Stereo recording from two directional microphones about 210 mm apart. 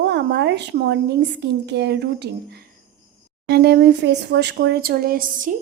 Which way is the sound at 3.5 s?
50° right (ahead or behind).